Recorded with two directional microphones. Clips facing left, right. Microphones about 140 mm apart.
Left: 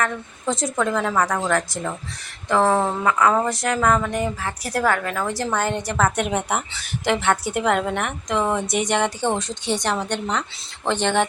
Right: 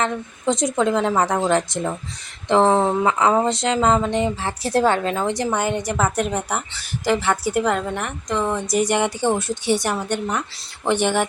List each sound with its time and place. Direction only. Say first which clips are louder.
0.0 s speech: right 2 dB; 20° right (ahead or behind)
6.2 s a woman's voice: left 1 dB; 5° left (ahead or behind)